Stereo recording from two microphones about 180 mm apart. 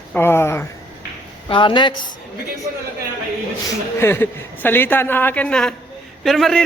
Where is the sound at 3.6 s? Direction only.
15° left (ahead or behind).